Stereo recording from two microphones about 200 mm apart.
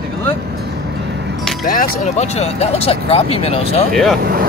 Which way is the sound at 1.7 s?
40° left (ahead or behind).